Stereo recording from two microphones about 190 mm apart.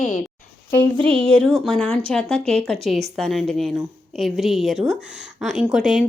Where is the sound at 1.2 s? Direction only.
5° left (ahead or behind).